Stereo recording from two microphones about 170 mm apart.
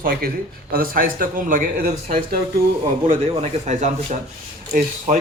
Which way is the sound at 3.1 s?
35° right (ahead or behind).